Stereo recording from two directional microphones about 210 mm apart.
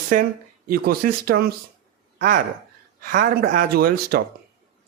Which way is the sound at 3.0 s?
40° right (ahead or behind).